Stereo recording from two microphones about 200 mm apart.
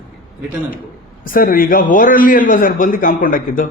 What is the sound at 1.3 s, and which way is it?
A man's voice, 45° left (ahead or behind).